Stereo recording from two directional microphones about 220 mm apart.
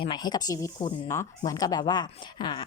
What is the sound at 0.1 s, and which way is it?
Speech, 20° left (ahead or behind).